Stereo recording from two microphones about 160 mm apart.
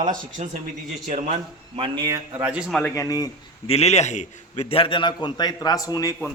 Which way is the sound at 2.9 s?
20° left (ahead or behind).